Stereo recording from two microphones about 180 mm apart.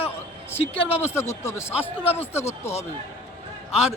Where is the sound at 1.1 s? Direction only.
15° left (ahead or behind).